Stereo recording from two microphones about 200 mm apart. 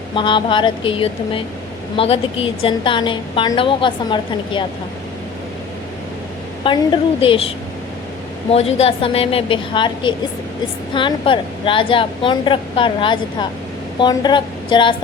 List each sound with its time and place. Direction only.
0.1 s a woman's voice: 25° left (ahead or behind)
6.6 s a woman's voice: 25° left (ahead or behind)
8.5 s a woman's voice: 30° left (ahead or behind)